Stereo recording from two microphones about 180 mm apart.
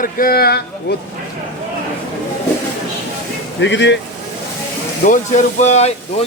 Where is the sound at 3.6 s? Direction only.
80° left.